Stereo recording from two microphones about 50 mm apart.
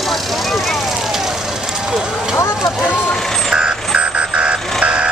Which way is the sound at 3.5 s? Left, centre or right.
Centre.